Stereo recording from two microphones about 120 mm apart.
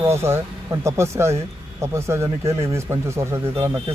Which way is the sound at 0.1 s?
20° right (ahead or behind).